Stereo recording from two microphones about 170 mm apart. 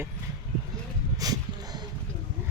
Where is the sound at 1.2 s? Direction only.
20° right (ahead or behind).